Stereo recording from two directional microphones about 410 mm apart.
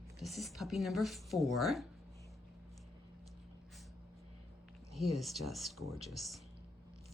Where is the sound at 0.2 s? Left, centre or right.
Centre.